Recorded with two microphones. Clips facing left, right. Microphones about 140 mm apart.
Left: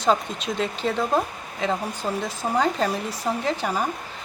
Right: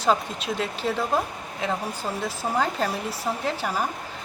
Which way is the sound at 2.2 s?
5° right (ahead or behind).